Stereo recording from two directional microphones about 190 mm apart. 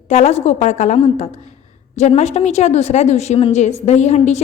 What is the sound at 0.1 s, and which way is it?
A woman's voice, 35° left (ahead or behind).